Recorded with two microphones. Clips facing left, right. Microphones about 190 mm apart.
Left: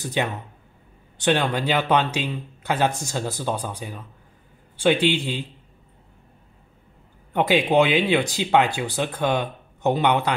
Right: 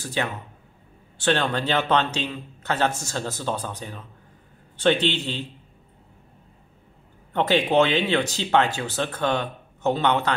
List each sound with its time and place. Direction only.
0.0 s speech: 20° left (ahead or behind)
7.3 s speech: 10° left (ahead or behind)